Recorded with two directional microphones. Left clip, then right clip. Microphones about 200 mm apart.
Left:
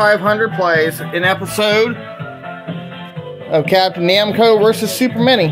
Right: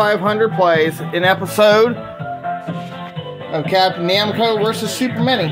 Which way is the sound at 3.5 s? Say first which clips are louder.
Left 2 dB; 15° left (ahead or behind).